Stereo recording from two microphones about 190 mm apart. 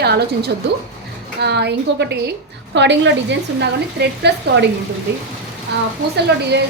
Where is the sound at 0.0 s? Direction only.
60° right (ahead or behind).